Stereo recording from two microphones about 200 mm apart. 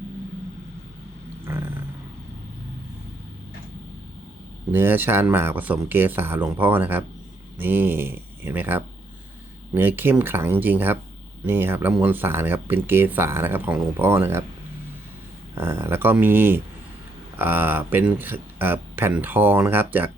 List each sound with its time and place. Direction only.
4.7 s speech: 10° right (ahead or behind)
15.5 s speech: 10° right (ahead or behind)